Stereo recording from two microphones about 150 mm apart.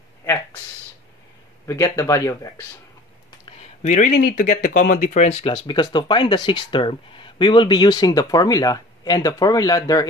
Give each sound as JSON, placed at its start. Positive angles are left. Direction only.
{"t": 1.7, "sound": "speech", "side_deg": 20}
{"t": 3.8, "sound": "speech", "side_deg": 55}
{"t": 5.5, "sound": "speech", "side_deg": 30}